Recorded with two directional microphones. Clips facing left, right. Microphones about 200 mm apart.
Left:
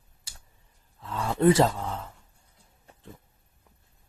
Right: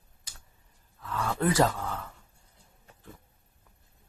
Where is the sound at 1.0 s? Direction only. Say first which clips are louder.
Left 7 dB; 25° left (ahead or behind).